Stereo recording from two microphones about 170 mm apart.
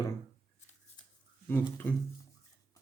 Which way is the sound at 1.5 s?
15° left (ahead or behind).